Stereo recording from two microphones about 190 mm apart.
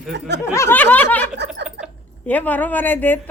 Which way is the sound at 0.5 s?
10° left (ahead or behind).